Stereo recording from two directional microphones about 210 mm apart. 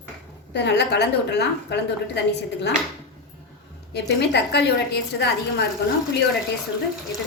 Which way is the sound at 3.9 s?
55° left (ahead or behind).